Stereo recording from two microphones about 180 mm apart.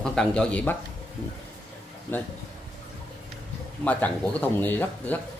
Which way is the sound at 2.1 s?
10° left (ahead or behind).